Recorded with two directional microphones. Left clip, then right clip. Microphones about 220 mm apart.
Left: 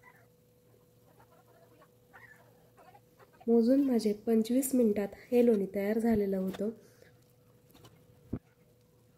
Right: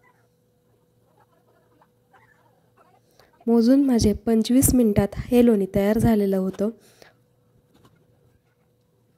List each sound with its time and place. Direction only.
3.4 s a woman's voice: 45° right (ahead or behind)